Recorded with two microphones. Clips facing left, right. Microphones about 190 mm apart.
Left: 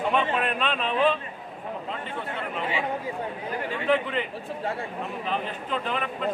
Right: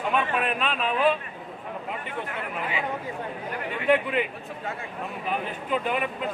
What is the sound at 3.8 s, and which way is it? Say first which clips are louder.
Speech: right 3 dB; 10° right (ahead or behind).